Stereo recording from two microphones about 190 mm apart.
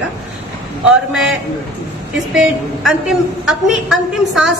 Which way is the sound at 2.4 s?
5° right (ahead or behind).